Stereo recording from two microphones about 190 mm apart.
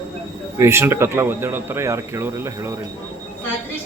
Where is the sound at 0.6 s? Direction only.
15° right (ahead or behind).